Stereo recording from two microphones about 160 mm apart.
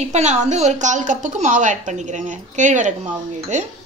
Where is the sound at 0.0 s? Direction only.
45° right (ahead or behind).